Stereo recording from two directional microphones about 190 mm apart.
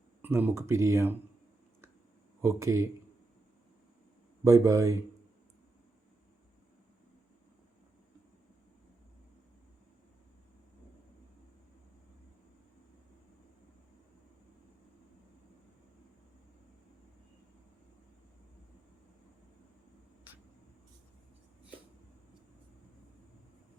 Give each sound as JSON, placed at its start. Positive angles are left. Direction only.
{"t": 0.2, "sound": "speech", "side_deg": -10}
{"t": 2.4, "sound": "speech", "side_deg": -15}
{"t": 4.4, "sound": "speech", "side_deg": -15}